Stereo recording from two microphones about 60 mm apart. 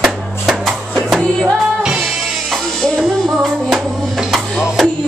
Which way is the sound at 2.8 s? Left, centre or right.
Centre.